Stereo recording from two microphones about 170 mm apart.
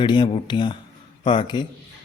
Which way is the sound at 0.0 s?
25° left (ahead or behind).